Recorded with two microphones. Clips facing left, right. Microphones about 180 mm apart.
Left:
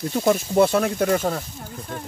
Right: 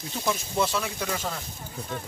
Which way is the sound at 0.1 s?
55° left (ahead or behind).